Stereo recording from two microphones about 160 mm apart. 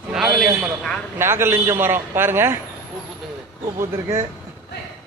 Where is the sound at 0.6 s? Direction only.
5° left (ahead or behind).